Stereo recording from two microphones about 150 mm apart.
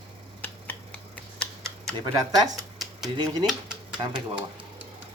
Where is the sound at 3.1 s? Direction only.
25° right (ahead or behind).